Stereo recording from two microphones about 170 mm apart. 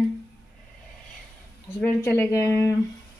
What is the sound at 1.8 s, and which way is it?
Speech, 15° left (ahead or behind).